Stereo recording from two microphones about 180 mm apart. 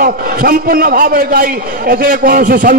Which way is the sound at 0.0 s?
55° right (ahead or behind).